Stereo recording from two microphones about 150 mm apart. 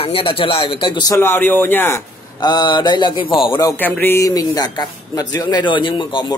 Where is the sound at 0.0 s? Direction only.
40° left (ahead or behind); by 2.0 s 15° left (ahead or behind).